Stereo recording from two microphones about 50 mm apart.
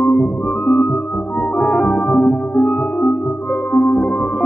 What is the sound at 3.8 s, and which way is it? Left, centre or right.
Music, centre.